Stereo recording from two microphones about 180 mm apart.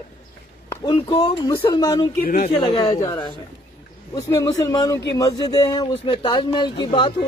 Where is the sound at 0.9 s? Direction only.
30° left (ahead or behind).